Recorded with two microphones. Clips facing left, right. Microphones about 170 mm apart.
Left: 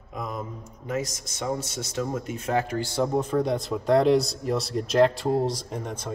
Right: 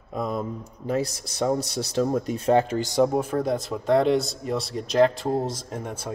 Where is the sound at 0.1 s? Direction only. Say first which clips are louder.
Right 6 dB; 35° right (ahead or behind).